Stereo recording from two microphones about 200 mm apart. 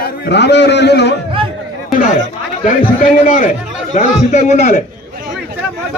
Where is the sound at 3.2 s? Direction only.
45° left (ahead or behind).